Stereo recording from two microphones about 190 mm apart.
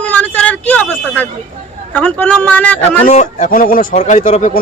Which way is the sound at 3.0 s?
40° left (ahead or behind).